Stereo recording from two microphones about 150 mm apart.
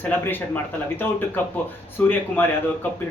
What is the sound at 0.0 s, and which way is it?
Speech, 10° left (ahead or behind).